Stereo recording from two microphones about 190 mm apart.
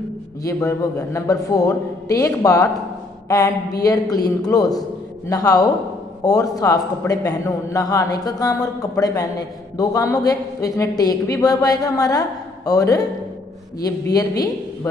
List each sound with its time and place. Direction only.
0.4 s a man's voice: 15° left (ahead or behind)
14.1 s a woman's voice: 20° left (ahead or behind)